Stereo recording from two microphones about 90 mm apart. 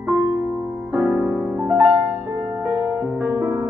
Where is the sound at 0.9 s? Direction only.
15° right (ahead or behind).